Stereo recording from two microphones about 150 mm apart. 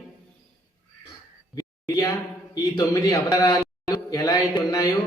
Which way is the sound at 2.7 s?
25° left (ahead or behind).